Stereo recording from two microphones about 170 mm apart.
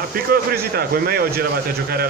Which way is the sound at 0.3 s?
65° right (ahead or behind).